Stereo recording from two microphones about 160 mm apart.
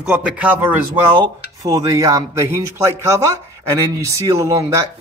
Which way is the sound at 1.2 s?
20° right (ahead or behind).